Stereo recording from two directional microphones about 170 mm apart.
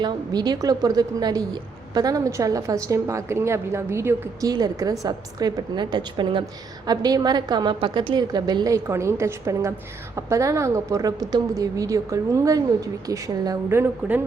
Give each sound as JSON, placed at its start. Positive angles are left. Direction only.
{"t": 0.0, "sound": "a woman's voice", "side_deg": -25}